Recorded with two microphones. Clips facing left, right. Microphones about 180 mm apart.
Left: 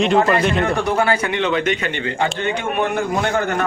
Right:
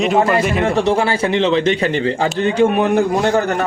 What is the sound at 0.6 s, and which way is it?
A man's voice, 25° right (ahead or behind).